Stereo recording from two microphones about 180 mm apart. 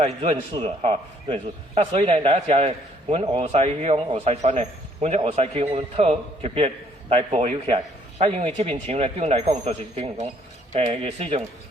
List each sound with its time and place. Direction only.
0.0 s a man's voice: 35° right (ahead or behind)